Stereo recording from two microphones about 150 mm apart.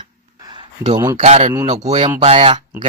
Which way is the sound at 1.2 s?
50° right (ahead or behind).